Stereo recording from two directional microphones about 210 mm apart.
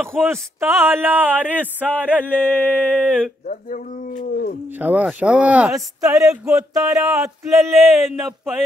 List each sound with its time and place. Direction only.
0.0 s speech: centre (ahead or behind)
0.3 s speech: 10° right (ahead or behind)
2.2 s a sound: 10° left (ahead or behind)
3.4 s a sound: 40° left (ahead or behind)
4.3 s speech: 45° left (ahead or behind)
4.7 s speech: 5° right (ahead or behind)